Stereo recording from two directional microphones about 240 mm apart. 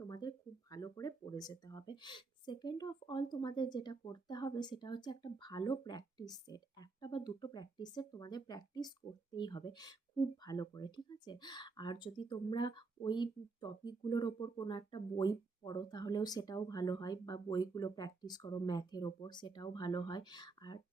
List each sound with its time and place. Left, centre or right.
0.0 s speech: centre